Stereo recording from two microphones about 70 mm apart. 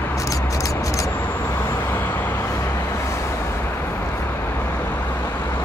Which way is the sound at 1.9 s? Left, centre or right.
Left.